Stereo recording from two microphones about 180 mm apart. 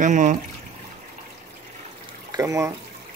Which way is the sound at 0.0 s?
40° right (ahead or behind).